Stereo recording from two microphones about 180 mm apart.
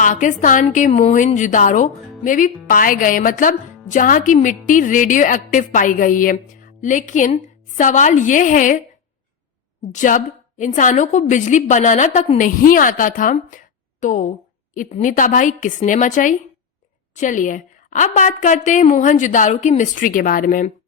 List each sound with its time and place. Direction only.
0.0 s a woman's voice: 45° left (ahead or behind)
9.9 s a woman's voice: 45° left (ahead or behind)